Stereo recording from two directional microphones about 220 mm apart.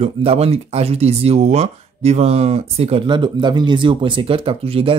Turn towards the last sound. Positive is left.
turn(degrees=-25)  # may be behind; listen again after turning